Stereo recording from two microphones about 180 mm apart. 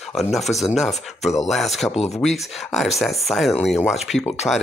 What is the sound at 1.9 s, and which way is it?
Speech, 35° left (ahead or behind).